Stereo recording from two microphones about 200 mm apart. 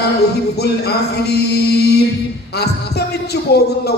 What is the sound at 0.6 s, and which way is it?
A man's voice, 55° left (ahead or behind).